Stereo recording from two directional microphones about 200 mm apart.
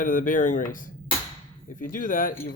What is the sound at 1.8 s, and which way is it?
Speech, 40° left (ahead or behind).